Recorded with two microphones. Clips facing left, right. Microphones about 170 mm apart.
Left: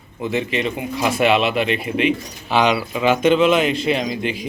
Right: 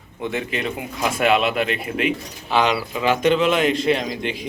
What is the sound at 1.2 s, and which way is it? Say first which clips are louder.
Speech: left 1 dB; centre (ahead or behind).